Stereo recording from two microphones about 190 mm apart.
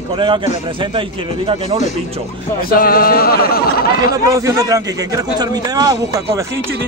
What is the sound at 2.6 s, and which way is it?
A man's voice, 50° left (ahead or behind).